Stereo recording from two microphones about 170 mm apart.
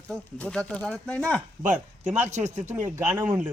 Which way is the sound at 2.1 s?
10° right (ahead or behind).